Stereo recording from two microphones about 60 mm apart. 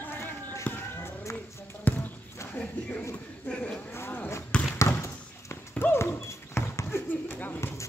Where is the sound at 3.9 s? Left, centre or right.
Left.